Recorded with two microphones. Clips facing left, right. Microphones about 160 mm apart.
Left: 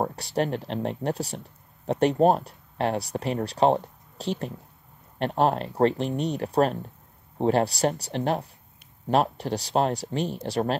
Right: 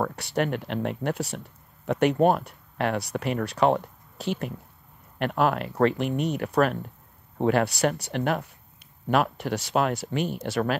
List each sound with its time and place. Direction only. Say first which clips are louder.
0.0 s speech: even; 35° left (ahead or behind)